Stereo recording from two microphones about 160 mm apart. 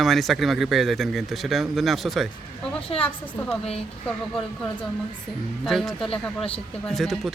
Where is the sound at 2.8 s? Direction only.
35° left (ahead or behind).